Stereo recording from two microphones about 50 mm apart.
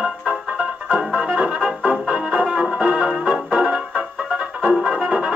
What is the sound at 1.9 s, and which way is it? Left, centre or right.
Music, centre.